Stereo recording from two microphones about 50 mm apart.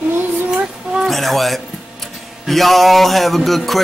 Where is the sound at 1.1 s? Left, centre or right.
Centre.